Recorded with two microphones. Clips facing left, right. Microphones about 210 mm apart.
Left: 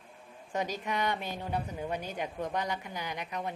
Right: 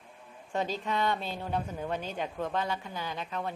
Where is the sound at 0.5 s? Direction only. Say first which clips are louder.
Right 2 dB; 15° left (ahead or behind).